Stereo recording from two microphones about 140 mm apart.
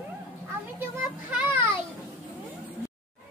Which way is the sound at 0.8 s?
10° right (ahead or behind).